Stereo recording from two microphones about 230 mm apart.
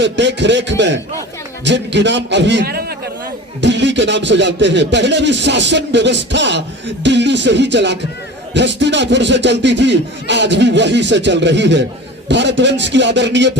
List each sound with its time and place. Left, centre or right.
0.0 s speech: right